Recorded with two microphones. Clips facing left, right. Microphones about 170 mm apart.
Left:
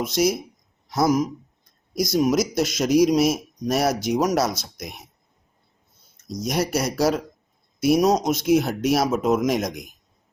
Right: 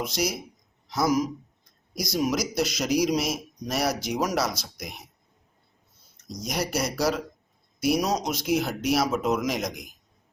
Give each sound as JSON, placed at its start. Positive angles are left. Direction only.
{"t": 0.0, "sound": "a man's voice", "side_deg": 50}
{"t": 6.5, "sound": "a man's voice", "side_deg": 50}